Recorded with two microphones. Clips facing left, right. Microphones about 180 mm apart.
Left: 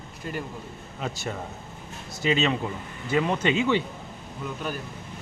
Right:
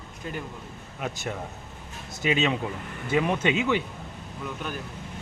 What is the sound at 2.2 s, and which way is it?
Speech, 10° right (ahead or behind).